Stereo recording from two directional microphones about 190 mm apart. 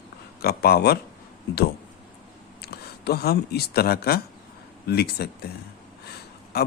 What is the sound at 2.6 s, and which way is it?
Speech, 55° left (ahead or behind).